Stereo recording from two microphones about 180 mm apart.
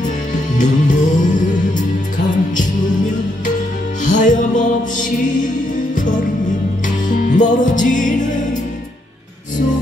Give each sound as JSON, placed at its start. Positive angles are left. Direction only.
{"t": 0.0, "sound": "music", "side_deg": 45}
{"t": 4.0, "sound": "music", "side_deg": 45}
{"t": 7.1, "sound": "music", "side_deg": 45}